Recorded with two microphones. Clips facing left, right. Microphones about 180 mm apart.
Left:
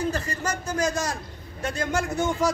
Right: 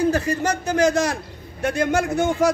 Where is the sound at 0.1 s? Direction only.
75° right (ahead or behind).